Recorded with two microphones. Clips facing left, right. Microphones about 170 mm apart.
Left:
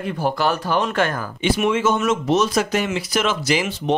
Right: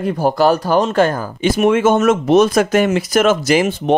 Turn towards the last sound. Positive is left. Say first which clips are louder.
# right 6 dB
turn(degrees=-50)  # may be behind; listen again after turning